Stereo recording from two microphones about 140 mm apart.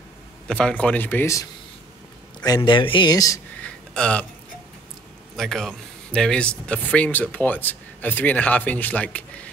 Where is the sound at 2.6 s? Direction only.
35° left (ahead or behind).